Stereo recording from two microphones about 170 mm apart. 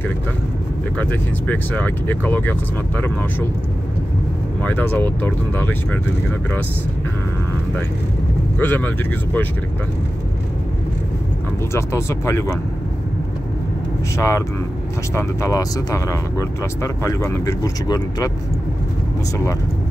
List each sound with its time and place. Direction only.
0.9 s speech: 10° left (ahead or behind)
4.6 s speech: 10° left (ahead or behind)
8.5 s speech: 10° left (ahead or behind)
11.7 s speech: 15° left (ahead or behind)
14.1 s speech: 15° left (ahead or behind)